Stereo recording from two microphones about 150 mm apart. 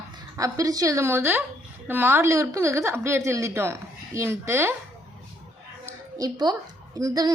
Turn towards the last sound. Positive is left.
turn(degrees=-25)  # may be behind; listen again after turning